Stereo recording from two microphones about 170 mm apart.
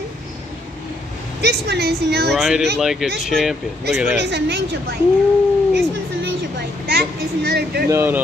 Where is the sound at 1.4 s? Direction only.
70° right (ahead or behind).